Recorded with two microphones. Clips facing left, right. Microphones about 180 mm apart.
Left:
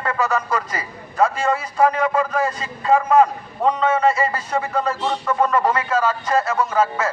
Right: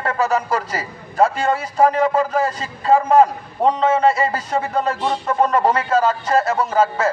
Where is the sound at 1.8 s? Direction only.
35° right (ahead or behind).